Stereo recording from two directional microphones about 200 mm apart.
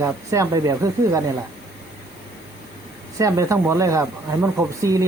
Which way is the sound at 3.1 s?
15° right (ahead or behind).